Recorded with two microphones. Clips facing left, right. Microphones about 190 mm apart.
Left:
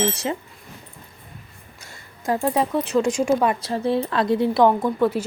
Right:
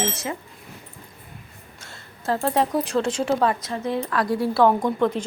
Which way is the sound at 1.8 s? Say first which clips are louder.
Left 2 dB; 15° left (ahead or behind).